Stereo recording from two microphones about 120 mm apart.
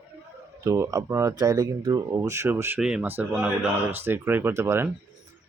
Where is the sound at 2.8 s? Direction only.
5° right (ahead or behind).